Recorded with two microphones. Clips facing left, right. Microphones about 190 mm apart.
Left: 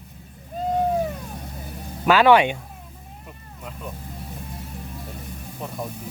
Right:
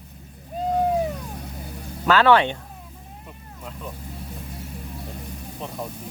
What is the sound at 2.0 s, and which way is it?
Speech, 15° left (ahead or behind).